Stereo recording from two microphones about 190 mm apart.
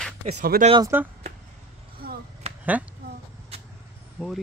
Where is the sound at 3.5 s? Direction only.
30° right (ahead or behind).